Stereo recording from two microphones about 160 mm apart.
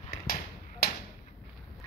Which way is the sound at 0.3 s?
75° left (ahead or behind).